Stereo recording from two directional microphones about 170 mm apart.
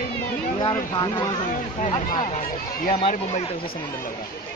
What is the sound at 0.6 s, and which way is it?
Speech, 25° left (ahead or behind).